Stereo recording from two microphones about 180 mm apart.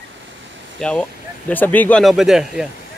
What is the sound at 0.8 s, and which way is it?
Speech, 5° left (ahead or behind).